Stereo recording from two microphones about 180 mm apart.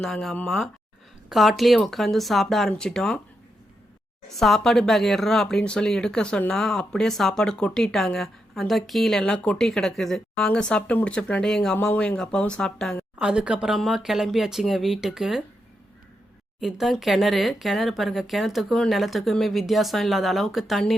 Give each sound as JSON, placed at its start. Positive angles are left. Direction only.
{"t": 0.0, "sound": "speech", "side_deg": 0}
{"t": 4.4, "sound": "speech", "side_deg": 0}
{"t": 16.6, "sound": "speech", "side_deg": 0}